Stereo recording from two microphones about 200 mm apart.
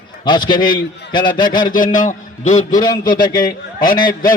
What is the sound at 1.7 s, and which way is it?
Speech, 40° left (ahead or behind).